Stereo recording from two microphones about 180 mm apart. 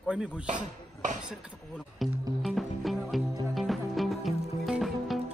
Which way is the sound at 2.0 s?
Centre (ahead or behind).